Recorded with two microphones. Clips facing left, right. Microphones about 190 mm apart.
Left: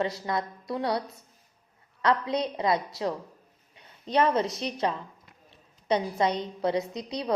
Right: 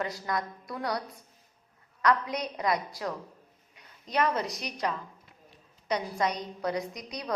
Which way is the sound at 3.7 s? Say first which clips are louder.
Left 5 dB; 30° left (ahead or behind).